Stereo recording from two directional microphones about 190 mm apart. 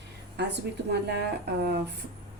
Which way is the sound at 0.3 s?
65° right (ahead or behind).